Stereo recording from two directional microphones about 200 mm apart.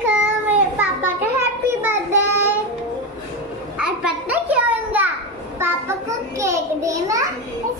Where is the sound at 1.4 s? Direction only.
10° right (ahead or behind).